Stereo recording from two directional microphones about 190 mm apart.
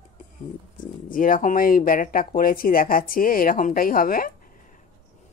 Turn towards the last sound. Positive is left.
turn(degrees=50)  # may be behind; listen again after turning